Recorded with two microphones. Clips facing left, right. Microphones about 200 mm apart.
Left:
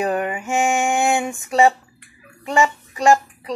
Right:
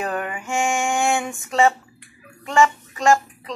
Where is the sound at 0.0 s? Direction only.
15° left (ahead or behind).